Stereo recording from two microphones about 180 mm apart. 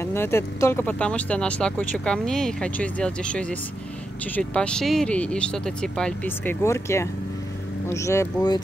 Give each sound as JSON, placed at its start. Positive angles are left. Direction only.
{"t": 0.0, "sound": "speech", "side_deg": 15}